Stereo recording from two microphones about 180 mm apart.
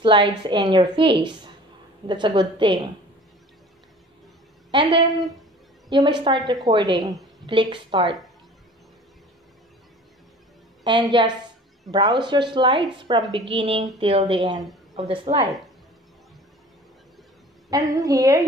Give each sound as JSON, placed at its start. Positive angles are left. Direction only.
{"t": 0.0, "sound": "a woman's voice", "side_deg": -25}
{"t": 6.0, "sound": "a woman's voice", "side_deg": -25}
{"t": 10.8, "sound": "a woman's voice", "side_deg": -25}
{"t": 17.6, "sound": "a woman's voice", "side_deg": -20}